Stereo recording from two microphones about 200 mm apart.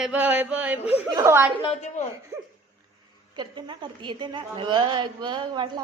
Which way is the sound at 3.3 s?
25° right (ahead or behind).